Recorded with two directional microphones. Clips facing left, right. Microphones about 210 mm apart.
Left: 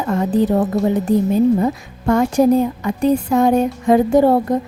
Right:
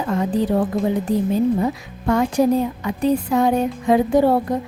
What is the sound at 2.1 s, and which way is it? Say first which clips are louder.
Speech: left 3 dB; 45° left (ahead or behind).